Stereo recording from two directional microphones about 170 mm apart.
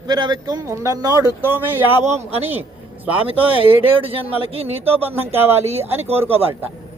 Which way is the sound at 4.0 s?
35° right (ahead or behind).